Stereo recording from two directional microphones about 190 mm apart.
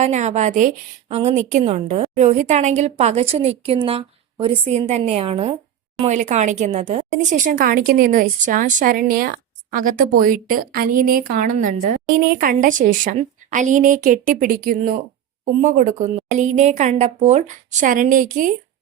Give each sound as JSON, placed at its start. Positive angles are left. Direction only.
{"t": 0.0, "sound": "a woman's voice", "side_deg": -40}